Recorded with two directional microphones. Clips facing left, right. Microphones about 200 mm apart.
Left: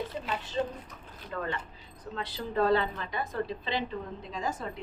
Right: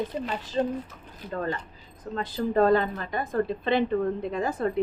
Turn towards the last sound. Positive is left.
turn(degrees=-60)  # may be behind; listen again after turning